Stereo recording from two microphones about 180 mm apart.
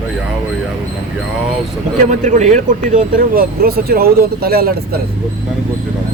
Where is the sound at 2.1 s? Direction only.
40° right (ahead or behind).